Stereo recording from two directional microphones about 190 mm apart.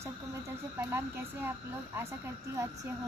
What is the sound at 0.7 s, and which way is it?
Speech, 10° right (ahead or behind).